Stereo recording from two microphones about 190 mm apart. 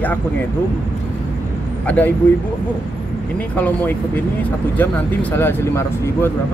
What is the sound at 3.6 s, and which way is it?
Speech, 10° left (ahead or behind).